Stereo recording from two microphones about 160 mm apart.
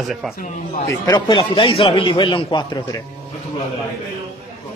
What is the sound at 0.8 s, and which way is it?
Speech, 25° left (ahead or behind).